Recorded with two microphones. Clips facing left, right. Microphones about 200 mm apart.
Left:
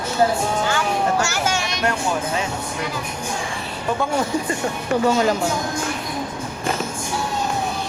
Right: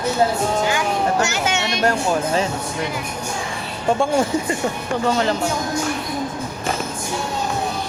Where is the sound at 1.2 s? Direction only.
20° right (ahead or behind).